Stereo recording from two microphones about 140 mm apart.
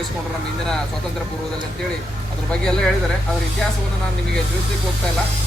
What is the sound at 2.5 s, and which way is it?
Speech, 5° left (ahead or behind).